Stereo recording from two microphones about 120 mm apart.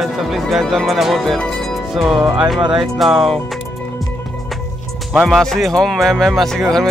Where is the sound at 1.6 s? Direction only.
Centre (ahead or behind).